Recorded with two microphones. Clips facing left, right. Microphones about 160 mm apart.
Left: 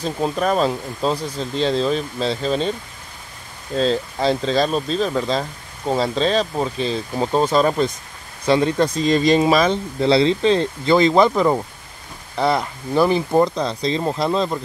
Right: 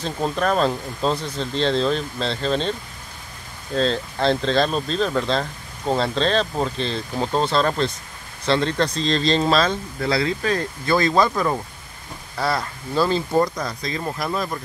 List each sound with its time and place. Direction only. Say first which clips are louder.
0.0 s speech: left 2 dB; 5° left (ahead or behind)
3.7 s speech: left 2 dB; 5° left (ahead or behind); by 14.6 s 25° left (ahead or behind)